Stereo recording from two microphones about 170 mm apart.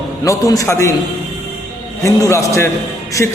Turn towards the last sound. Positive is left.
turn(degrees=15)  # may be behind; listen again after turning